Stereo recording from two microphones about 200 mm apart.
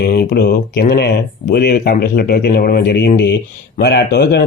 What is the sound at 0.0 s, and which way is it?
Speech, 50° left (ahead or behind).